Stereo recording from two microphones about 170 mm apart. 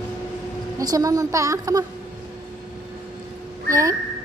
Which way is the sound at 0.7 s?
20° right (ahead or behind).